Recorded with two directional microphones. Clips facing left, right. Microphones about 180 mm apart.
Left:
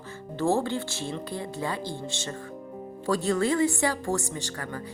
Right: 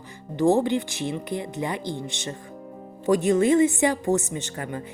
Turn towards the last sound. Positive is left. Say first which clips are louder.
# right 3 dB
turn(degrees=-20)  # may be behind; listen again after turning